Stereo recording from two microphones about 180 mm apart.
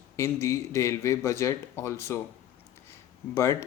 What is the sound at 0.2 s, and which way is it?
Speech, 15° left (ahead or behind).